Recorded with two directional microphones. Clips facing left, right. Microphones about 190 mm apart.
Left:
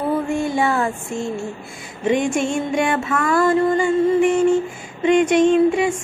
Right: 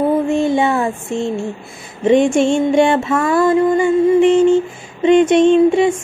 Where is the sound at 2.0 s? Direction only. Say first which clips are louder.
Right 7 dB; 25° right (ahead or behind).